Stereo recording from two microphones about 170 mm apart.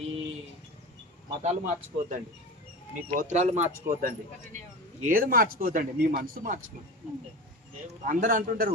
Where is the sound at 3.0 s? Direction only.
50° right (ahead or behind).